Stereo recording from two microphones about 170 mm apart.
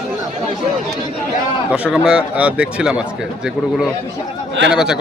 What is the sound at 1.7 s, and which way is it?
Speech, 5° right (ahead or behind).